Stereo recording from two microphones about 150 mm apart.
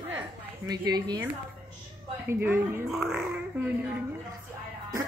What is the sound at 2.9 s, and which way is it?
Speech, 5° right (ahead or behind).